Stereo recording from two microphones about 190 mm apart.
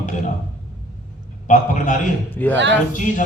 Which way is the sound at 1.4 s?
40° left (ahead or behind).